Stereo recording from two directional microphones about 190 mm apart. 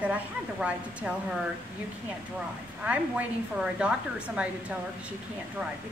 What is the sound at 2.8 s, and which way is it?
A woman's voice, 5° right (ahead or behind).